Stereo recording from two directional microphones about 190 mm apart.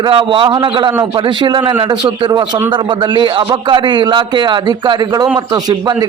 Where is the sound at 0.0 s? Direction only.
25° right (ahead or behind).